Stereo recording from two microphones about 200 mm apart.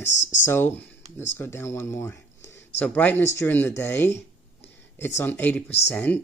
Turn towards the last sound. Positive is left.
turn(degrees=10)  # may be behind; listen again after turning